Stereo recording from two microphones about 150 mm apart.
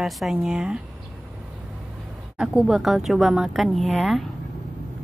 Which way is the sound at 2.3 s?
5° right (ahead or behind).